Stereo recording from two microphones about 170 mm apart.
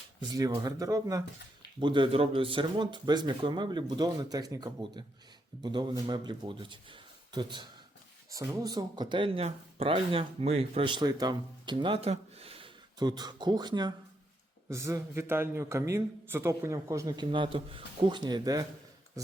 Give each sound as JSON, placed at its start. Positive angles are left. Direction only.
{"t": 0.2, "sound": "a man's voice", "side_deg": -20}